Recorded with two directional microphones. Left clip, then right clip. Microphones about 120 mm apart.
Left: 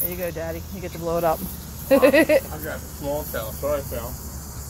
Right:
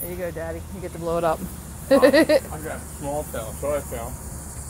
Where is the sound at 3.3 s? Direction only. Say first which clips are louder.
Left 1 dB; 25° left (ahead or behind).